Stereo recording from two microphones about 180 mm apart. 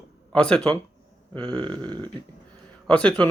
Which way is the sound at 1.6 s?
25° right (ahead or behind).